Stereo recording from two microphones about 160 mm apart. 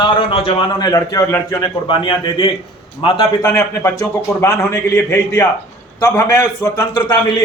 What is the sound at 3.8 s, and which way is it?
A man's voice, 15° left (ahead or behind).